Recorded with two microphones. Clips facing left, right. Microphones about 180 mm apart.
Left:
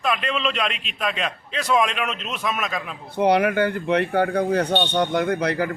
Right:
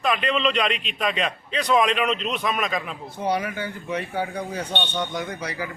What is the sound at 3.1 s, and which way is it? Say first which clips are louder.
Speech: left 8 dB; 65° left (ahead or behind).